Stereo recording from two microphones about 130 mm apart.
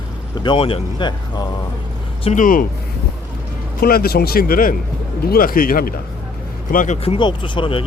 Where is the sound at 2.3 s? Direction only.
85° left.